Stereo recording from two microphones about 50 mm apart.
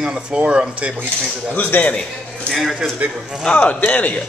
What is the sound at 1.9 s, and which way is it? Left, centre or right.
Speech, left.